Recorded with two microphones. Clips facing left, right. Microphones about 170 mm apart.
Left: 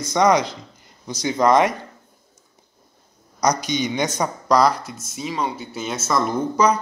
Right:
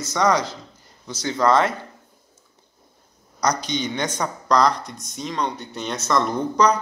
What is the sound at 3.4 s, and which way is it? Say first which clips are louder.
Speech: left 2 dB; 10° left (ahead or behind).